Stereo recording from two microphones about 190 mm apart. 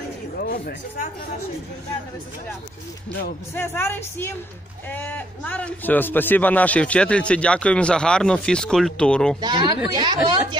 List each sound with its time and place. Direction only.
0.4 s speech: 50° left (ahead or behind)
3.5 s a man's voice: 10° left (ahead or behind)
9.4 s a woman's voice: 25° right (ahead or behind)